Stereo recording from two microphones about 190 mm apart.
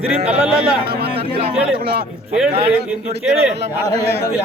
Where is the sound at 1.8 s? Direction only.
50° right (ahead or behind).